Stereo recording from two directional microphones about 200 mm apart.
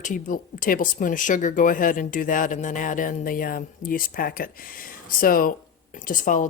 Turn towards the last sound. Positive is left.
turn(degrees=40)  # may be behind; listen again after turning